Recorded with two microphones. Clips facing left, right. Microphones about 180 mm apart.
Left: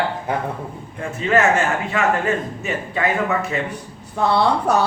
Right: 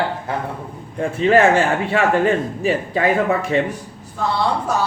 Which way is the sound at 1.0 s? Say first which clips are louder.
Right 4 dB; 30° right (ahead or behind).